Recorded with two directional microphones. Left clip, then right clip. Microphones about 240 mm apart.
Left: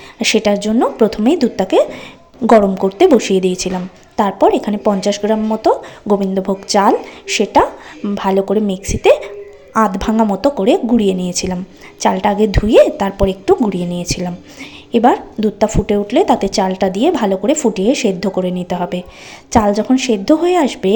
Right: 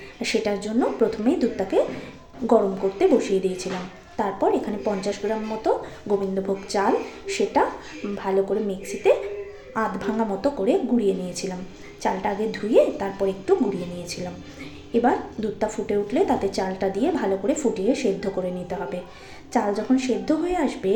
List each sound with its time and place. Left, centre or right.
0.2 s a woman's voice: left
3.0 s a woman's voice: left